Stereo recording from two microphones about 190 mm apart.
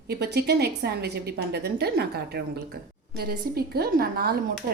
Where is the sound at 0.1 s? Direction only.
60° right (ahead or behind).